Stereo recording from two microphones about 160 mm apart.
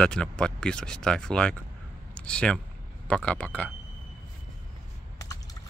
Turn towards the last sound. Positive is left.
turn(degrees=5)  # may be behind; listen again after turning